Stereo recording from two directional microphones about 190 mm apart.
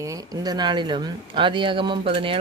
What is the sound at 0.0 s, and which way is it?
A woman's voice, 20° right (ahead or behind).